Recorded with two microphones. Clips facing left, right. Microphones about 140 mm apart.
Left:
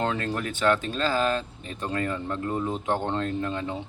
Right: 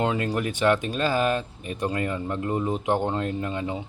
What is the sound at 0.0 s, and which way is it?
Speech, 15° right (ahead or behind).